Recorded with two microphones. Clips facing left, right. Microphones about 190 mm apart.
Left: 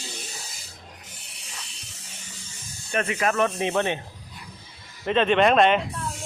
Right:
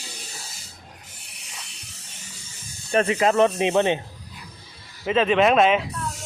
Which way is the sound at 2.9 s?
30° right (ahead or behind).